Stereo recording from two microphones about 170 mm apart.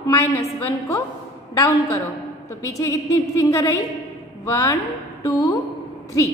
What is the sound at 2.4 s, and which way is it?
A woman's voice, 20° left (ahead or behind).